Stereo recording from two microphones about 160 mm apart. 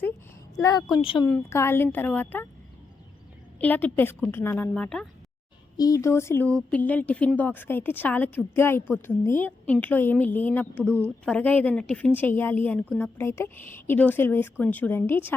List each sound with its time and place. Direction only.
0.6 s speech: 25° left (ahead or behind)
1.2 s speech: 15° left (ahead or behind)
3.6 s speech: 10° left (ahead or behind)
5.7 s speech: 20° left (ahead or behind)